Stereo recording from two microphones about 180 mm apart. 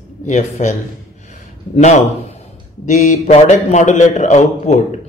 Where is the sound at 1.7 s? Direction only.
40° left (ahead or behind).